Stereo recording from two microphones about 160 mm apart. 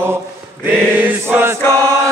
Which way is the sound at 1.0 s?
15° right (ahead or behind).